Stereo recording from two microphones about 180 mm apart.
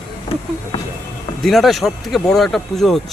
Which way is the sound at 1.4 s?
Centre (ahead or behind).